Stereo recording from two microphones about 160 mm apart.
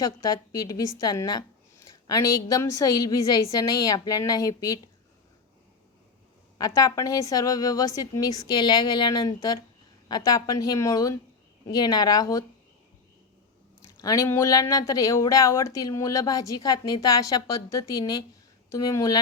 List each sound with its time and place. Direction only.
0.0 s speech: 20° left (ahead or behind)
6.6 s speech: 20° left (ahead or behind)
14.0 s speech: 20° left (ahead or behind)